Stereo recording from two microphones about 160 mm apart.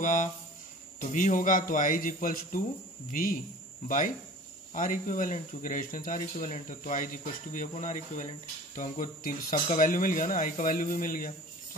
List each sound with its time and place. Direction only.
0.0 s speech: 50° left (ahead or behind)